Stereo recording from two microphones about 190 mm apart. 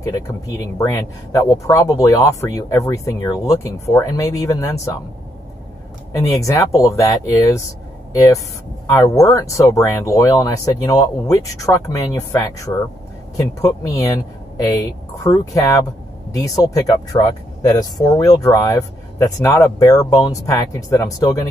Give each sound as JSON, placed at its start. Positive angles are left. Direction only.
{"t": 0.0, "sound": "speech", "side_deg": 15}
{"t": 6.1, "sound": "speech", "side_deg": 15}
{"t": 8.8, "sound": "speech", "side_deg": 15}
{"t": 13.8, "sound": "speech", "side_deg": 20}